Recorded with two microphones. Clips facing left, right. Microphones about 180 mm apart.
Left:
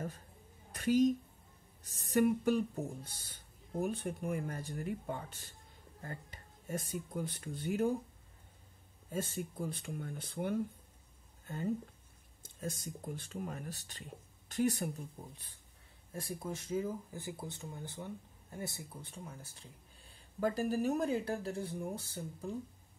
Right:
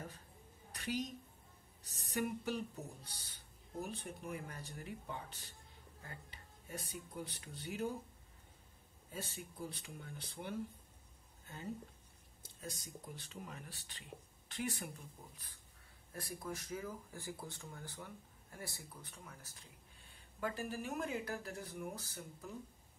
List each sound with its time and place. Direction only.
0.7 s a sound: 50° left (ahead or behind)
1.8 s speech: 50° left (ahead or behind)
9.1 s speech: 50° left (ahead or behind)
12.4 s a woman's voice: 50° left (ahead or behind)
16.1 s speech: 25° left (ahead or behind)
20.3 s speech: 40° left (ahead or behind)